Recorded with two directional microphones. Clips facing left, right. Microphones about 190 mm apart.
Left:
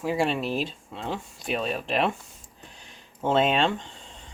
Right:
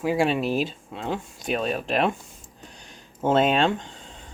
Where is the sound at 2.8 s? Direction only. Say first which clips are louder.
Right 3 dB; centre (ahead or behind).